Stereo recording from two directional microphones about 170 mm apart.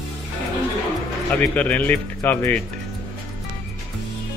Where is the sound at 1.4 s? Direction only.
10° left (ahead or behind).